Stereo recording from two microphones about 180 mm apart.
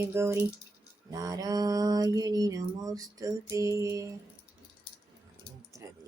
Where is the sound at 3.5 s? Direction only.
15° right (ahead or behind).